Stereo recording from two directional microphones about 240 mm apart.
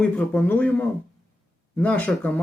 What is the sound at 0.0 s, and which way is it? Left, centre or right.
Speech, centre.